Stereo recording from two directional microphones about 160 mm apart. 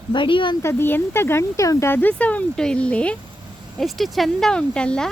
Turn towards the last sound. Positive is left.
turn(degrees=5)  # may be behind; listen again after turning